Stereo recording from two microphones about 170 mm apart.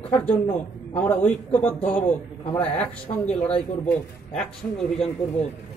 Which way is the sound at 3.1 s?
25° left (ahead or behind).